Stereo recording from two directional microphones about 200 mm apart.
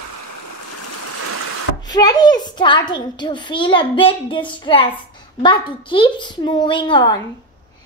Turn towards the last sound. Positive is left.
turn(degrees=20)  # may be behind; listen again after turning